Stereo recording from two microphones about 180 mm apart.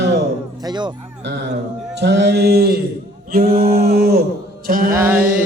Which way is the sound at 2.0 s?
70° right (ahead or behind).